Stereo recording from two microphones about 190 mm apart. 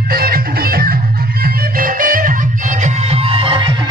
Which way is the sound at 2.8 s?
30° right (ahead or behind).